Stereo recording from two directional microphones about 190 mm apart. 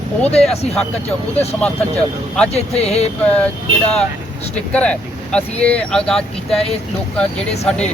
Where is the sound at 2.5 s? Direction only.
35° left (ahead or behind).